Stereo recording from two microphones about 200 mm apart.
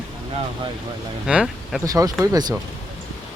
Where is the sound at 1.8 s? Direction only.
15° right (ahead or behind).